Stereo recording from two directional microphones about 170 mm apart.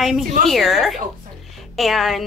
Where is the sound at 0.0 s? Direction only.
Centre (ahead or behind).